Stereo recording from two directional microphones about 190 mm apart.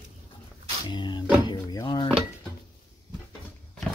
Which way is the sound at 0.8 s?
25° left (ahead or behind).